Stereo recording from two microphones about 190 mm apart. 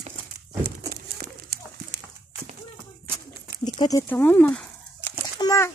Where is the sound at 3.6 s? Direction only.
20° left (ahead or behind).